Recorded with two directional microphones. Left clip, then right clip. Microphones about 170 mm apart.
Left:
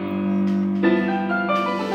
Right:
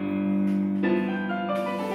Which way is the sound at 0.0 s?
35° left (ahead or behind).